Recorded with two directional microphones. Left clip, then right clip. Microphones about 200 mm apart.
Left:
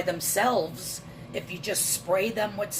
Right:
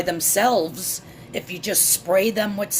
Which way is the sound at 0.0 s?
50° right (ahead or behind).